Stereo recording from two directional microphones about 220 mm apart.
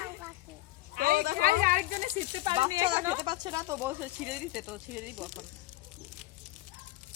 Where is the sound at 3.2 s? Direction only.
20° right (ahead or behind); by 5.3 s 5° right (ahead or behind).